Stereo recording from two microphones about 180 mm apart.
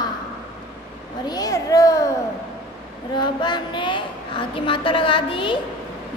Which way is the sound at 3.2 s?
25° left (ahead or behind).